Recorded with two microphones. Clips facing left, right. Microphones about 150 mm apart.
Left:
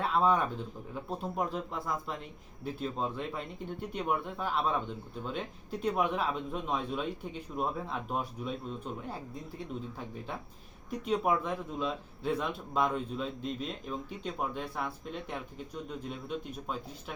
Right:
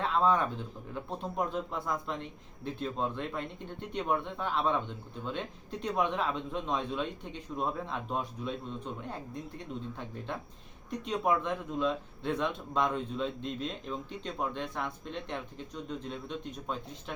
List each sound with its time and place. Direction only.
0.0 s speech: 10° left (ahead or behind)
11.0 s speech: 5° left (ahead or behind)